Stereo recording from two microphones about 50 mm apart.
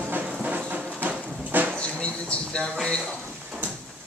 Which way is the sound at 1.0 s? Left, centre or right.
Right.